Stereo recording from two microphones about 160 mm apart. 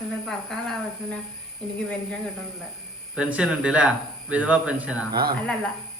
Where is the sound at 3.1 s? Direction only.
5° right (ahead or behind).